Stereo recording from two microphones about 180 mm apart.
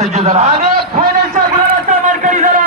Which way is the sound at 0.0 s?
40° right (ahead or behind).